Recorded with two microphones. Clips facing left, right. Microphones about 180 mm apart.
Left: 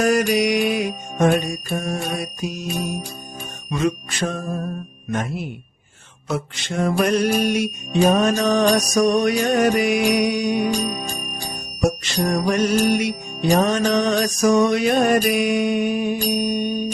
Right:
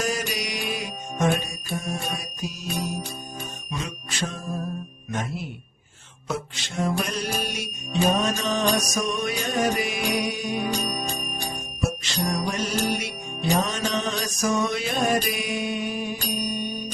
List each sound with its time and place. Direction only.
0.0 s mantra: 55° left (ahead or behind)
3.7 s mantra: 60° left (ahead or behind)
6.7 s mantra: 60° left (ahead or behind)
11.8 s mantra: 55° left (ahead or behind)